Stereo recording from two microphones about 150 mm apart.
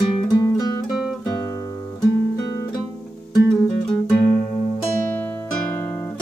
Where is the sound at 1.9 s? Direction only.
25° left (ahead or behind).